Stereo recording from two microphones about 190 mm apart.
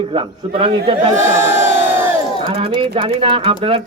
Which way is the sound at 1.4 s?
10° right (ahead or behind).